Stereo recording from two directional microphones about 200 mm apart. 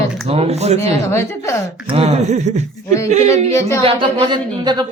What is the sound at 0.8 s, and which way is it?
Speech, 15° left (ahead or behind).